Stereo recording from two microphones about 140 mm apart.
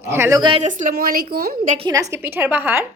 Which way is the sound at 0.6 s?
65° right (ahead or behind).